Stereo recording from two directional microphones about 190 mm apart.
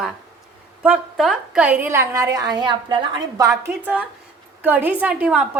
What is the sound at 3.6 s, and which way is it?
A woman's voice, 10° right (ahead or behind).